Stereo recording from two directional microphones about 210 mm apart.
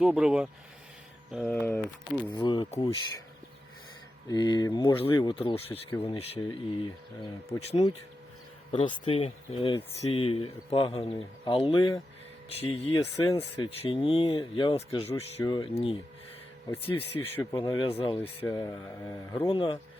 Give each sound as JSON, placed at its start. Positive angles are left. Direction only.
{"t": 0.0, "sound": "speech", "side_deg": -5}
{"t": 2.3, "sound": "speech", "side_deg": 20}
{"t": 4.3, "sound": "speech", "side_deg": 20}
{"t": 5.0, "sound": "speech", "side_deg": 10}
{"t": 5.3, "sound": "speech", "side_deg": 25}
{"t": 8.7, "sound": "speech", "side_deg": 25}
{"t": 15.1, "sound": "speech", "side_deg": 15}
{"t": 17.2, "sound": "speech", "side_deg": 10}
{"t": 17.6, "sound": "speech", "side_deg": 20}
{"t": 18.2, "sound": "speech", "side_deg": 10}